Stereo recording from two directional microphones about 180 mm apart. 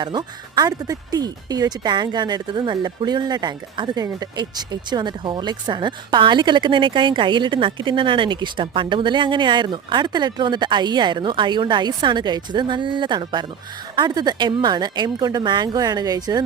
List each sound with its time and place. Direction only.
0.0 s speech: 25° right (ahead or behind)